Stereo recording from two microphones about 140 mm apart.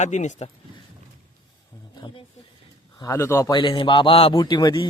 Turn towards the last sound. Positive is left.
turn(degrees=35)  # may be behind; listen again after turning